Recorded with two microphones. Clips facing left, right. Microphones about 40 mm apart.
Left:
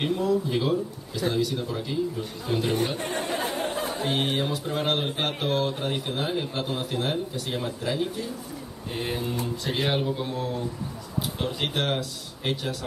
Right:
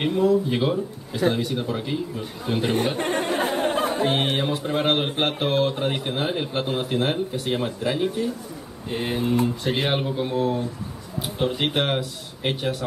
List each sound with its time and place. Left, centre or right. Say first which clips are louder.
0.0 s speech: right 5 dB; right
1.2 s speech: right 3 dB; right
9.2 s speech: right 7 dB; right